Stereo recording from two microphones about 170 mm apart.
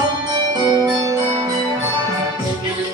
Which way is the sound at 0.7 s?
25° right (ahead or behind).